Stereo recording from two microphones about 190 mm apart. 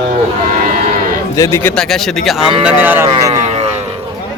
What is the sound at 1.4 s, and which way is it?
Speech, 10° left (ahead or behind).